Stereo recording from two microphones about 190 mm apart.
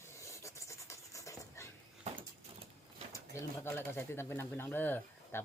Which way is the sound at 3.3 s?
10° left (ahead or behind).